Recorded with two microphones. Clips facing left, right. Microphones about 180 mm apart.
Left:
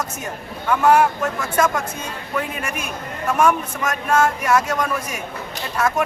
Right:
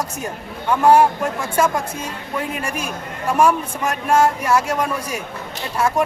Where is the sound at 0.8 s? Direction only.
30° right (ahead or behind).